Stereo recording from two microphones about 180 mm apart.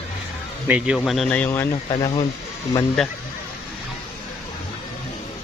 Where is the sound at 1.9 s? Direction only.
30° left (ahead or behind).